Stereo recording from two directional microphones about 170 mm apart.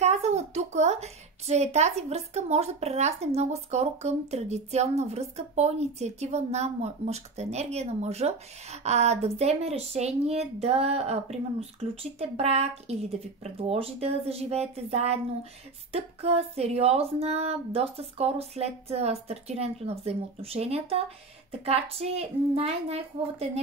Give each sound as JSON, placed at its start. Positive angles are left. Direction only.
{"t": 0.0, "sound": "a woman's voice", "side_deg": -40}